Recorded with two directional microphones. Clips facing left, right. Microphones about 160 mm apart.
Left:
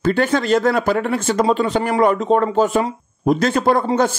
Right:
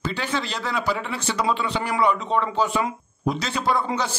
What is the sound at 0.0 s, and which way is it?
Speech, 50° left (ahead or behind).